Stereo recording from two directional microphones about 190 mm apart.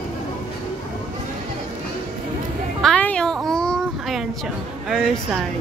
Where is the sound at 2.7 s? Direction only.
5° left (ahead or behind).